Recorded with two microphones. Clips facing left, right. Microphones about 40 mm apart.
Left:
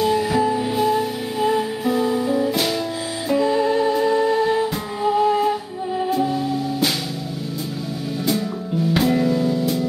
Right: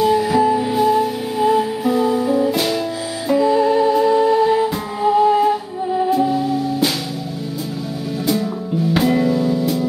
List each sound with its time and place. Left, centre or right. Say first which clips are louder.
0.0 s music: right 4 dB; centre
8.9 s music: right 2 dB; centre